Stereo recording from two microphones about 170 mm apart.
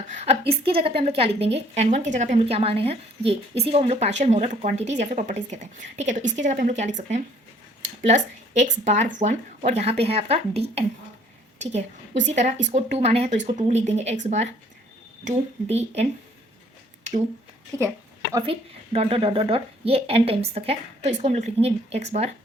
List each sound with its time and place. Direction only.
0.1 s a woman's voice: 40° right (ahead or behind)
18.9 s a woman's voice: 35° right (ahead or behind)